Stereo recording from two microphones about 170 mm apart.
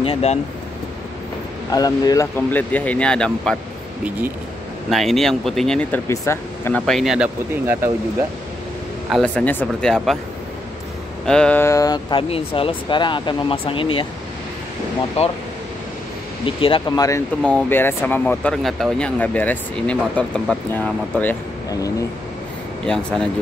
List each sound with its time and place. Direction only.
0.0 s speech: 35° left (ahead or behind)
1.7 s speech: 20° left (ahead or behind)
2.3 s speech: 10° left (ahead or behind)
4.8 s speech: centre (ahead or behind)
6.9 s speech: centre (ahead or behind)
9.1 s speech: 5° left (ahead or behind)
11.2 s speech: 5° left (ahead or behind); by 14.0 s 30° left (ahead or behind)
15.2 s speech: 40° left (ahead or behind)
16.4 s speech: 30° left (ahead or behind)
17.4 s speech: 5° left (ahead or behind)